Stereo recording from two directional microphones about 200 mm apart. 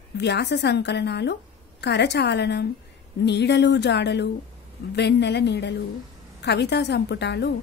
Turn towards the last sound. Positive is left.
turn(degrees=60)  # may be behind; listen again after turning